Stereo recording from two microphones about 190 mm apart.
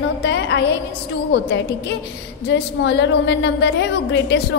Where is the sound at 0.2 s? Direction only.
70° left (ahead or behind).